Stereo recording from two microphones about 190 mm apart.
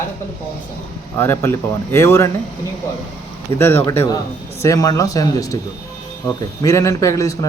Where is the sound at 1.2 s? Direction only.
10° left (ahead or behind).